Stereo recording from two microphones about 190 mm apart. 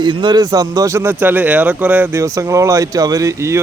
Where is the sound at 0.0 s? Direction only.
25° right (ahead or behind).